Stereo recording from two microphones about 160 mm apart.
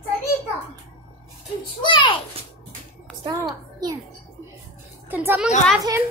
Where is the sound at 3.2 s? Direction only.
25° right (ahead or behind).